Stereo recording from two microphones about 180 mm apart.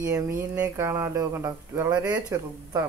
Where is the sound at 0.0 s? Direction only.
15° right (ahead or behind).